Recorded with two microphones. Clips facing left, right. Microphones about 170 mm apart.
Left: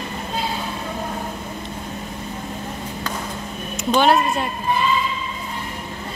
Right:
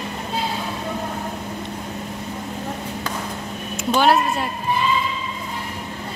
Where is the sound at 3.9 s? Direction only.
5° right (ahead or behind).